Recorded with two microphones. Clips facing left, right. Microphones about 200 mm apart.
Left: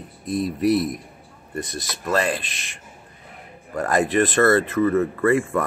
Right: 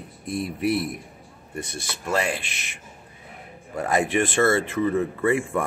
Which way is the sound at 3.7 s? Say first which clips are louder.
Left 3 dB; 10° right (ahead or behind).